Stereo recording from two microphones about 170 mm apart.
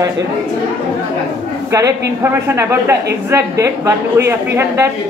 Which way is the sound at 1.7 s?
20° right (ahead or behind).